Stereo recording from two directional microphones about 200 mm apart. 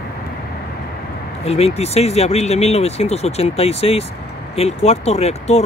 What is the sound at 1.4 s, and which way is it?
Speech, 30° left (ahead or behind).